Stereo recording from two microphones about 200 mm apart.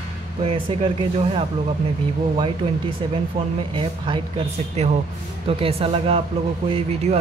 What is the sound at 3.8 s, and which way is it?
Speech, 25° right (ahead or behind).